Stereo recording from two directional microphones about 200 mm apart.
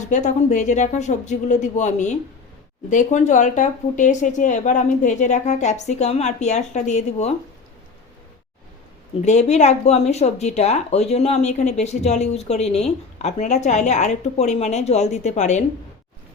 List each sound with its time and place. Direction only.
0.1 s speech: 40° left (ahead or behind)
9.2 s speech: 35° left (ahead or behind)